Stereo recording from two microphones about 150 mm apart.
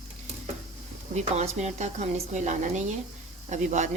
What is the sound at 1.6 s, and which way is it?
Speech, 50° right (ahead or behind).